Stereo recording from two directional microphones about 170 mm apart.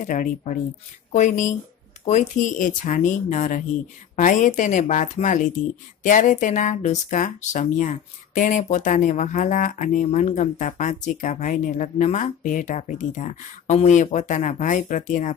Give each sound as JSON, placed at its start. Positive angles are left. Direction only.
{"t": 0.0, "sound": "speech", "side_deg": 50}